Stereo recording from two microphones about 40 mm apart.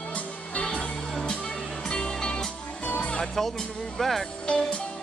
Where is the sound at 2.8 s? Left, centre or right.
Left.